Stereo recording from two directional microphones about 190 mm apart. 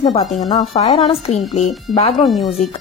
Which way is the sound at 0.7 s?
30° left (ahead or behind).